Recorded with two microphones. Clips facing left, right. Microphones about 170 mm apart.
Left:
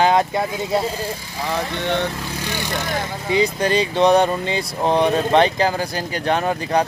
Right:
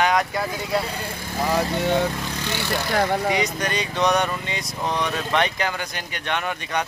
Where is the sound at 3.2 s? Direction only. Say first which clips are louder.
Left 5 dB; 30° left (ahead or behind).